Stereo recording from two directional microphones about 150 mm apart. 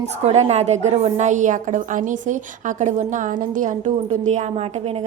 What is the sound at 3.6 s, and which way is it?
Speech, 55° right (ahead or behind).